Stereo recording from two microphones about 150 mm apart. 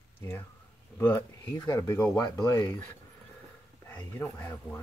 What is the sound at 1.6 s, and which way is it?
Speech, 20° left (ahead or behind).